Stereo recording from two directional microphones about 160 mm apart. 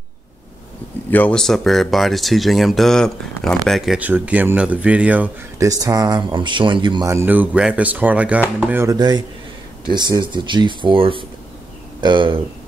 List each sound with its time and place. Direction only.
1.1 s speech: 5° left (ahead or behind); by 5.3 s 10° right (ahead or behind)
5.6 s speech: 20° right (ahead or behind)
7.1 s speech: 15° right (ahead or behind)
8.9 s speech: 25° right (ahead or behind)